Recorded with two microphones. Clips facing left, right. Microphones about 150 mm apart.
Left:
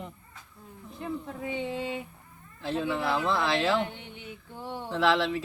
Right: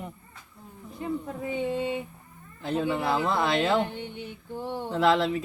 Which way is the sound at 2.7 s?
15° right (ahead or behind).